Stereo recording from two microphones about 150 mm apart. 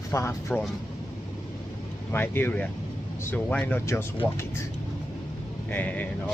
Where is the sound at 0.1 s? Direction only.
20° left (ahead or behind).